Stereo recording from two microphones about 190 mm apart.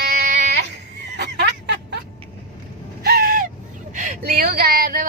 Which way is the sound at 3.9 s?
45° right (ahead or behind).